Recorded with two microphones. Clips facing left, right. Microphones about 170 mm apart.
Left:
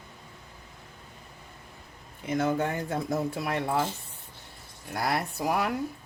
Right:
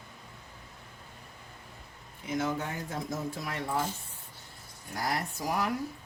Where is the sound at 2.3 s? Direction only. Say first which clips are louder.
Left 5 dB; 55° left (ahead or behind).